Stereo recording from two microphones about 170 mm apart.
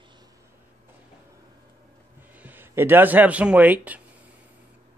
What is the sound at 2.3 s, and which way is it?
Speech, 10° right (ahead or behind).